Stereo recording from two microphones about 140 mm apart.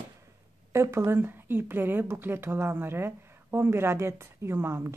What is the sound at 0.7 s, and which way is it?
Speech, 20° right (ahead or behind).